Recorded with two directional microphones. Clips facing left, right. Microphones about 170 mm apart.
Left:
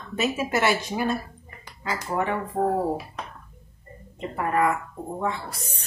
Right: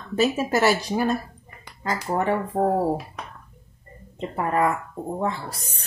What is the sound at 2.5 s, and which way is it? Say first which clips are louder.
Speech: right 1 dB; 50° right (ahead or behind).